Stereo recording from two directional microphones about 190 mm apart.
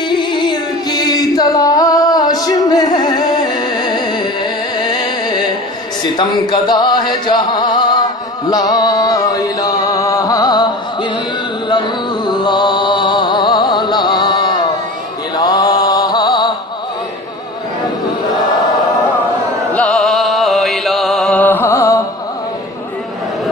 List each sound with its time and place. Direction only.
0.1 s music: 25° left (ahead or behind)
12.3 s music: 25° left (ahead or behind)
15.3 s mantra: 20° left (ahead or behind)
19.7 s music: 5° left (ahead or behind)